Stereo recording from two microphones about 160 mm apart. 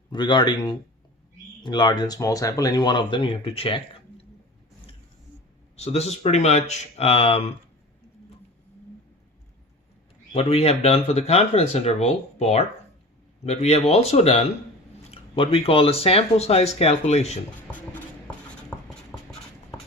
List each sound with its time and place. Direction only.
0.1 s speech: 30° left (ahead or behind)
5.7 s speech: 40° left (ahead or behind)
10.3 s speech: 35° left (ahead or behind)
18.9 s writing: 5° left (ahead or behind)